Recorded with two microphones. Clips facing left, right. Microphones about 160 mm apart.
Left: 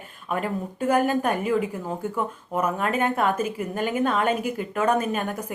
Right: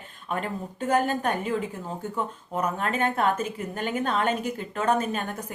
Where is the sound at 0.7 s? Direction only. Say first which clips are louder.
Left 3 dB; 10° left (ahead or behind).